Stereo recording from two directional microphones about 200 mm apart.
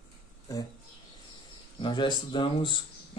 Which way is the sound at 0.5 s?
20° left (ahead or behind).